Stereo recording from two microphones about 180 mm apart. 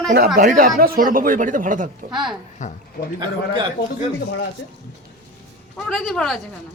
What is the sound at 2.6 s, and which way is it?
Speech, 45° left (ahead or behind).